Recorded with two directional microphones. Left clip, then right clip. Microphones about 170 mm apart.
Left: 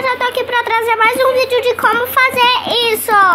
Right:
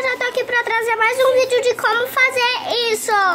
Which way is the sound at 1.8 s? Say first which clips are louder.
Left 4 dB; 30° right (ahead or behind).